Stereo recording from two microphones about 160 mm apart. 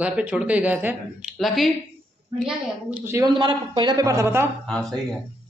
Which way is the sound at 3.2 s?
30° right (ahead or behind).